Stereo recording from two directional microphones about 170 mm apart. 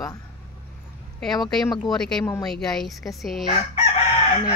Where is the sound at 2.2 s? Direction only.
15° left (ahead or behind).